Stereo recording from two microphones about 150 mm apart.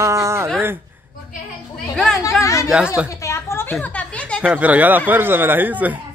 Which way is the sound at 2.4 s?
20° left (ahead or behind).